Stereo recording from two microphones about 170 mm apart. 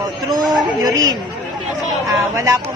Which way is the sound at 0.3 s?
25° right (ahead or behind).